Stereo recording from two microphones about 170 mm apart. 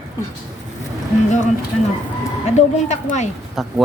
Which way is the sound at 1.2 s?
45° left (ahead or behind).